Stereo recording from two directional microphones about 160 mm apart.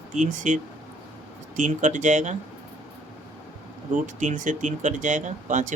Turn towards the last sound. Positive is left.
turn(degrees=-50)  # may be behind; listen again after turning